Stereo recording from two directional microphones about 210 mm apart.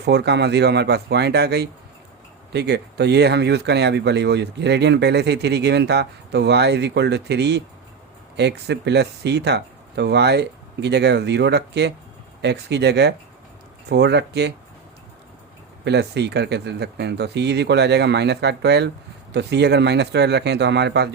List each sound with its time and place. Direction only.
0.0 s speech: 55° right (ahead or behind)
15.8 s speech: 55° right (ahead or behind)